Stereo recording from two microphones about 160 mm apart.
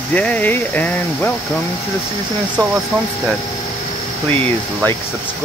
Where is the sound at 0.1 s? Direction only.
10° left (ahead or behind).